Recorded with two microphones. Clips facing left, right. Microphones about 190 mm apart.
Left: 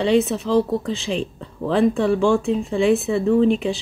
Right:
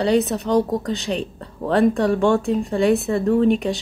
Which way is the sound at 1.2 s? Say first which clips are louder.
Left 1 dB; centre (ahead or behind).